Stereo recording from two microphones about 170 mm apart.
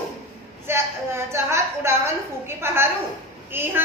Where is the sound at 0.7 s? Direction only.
15° right (ahead or behind).